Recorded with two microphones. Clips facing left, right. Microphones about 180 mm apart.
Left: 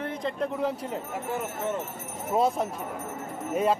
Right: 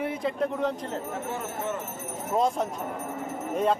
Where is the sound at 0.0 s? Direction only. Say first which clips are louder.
Right 2 dB; 5° right (ahead or behind).